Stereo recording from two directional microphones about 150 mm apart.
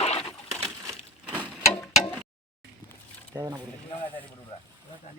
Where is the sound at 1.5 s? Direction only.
5° left (ahead or behind).